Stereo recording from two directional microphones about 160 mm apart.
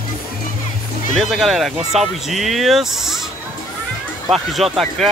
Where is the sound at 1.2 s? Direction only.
Centre (ahead or behind).